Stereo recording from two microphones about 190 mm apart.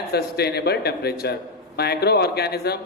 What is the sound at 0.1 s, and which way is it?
Speech, 55° left (ahead or behind).